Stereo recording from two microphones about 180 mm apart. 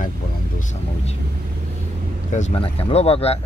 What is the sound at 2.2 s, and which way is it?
Speech, 40° left (ahead or behind).